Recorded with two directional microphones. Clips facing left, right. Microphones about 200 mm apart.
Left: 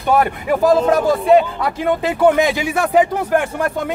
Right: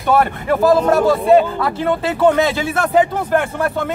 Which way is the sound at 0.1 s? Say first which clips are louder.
Even; 15° left (ahead or behind).